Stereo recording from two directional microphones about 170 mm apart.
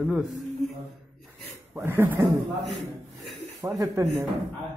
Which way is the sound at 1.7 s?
15° right (ahead or behind).